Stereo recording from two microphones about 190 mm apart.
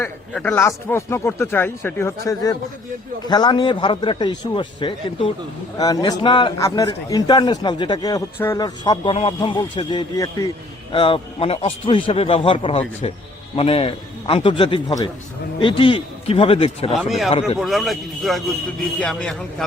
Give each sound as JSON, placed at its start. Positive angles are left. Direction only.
{"t": 0.3, "sound": "a man's voice", "side_deg": 10}
{"t": 16.9, "sound": "speech", "side_deg": 0}